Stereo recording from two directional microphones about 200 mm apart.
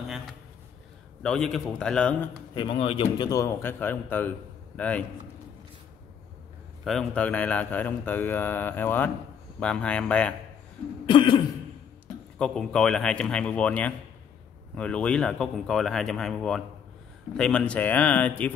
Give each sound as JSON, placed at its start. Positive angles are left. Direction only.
{"t": 1.2, "sound": "speech", "side_deg": 5}
{"t": 2.5, "sound": "speech", "side_deg": 25}
{"t": 6.8, "sound": "speech", "side_deg": 0}
{"t": 11.1, "sound": "cough", "side_deg": 25}
{"t": 12.4, "sound": "speech", "side_deg": 5}